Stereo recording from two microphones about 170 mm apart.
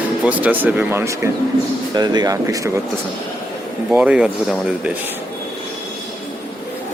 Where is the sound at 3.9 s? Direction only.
5° right (ahead or behind).